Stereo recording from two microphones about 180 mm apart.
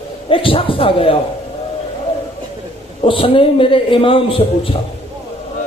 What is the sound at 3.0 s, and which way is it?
A man's voice, 30° left (ahead or behind).